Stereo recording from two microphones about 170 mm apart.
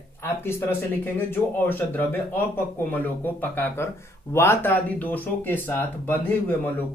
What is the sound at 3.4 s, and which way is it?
Speech, 15° left (ahead or behind).